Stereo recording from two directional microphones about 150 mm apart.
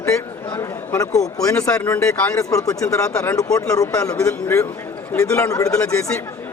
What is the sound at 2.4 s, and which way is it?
Speech, 25° left (ahead or behind).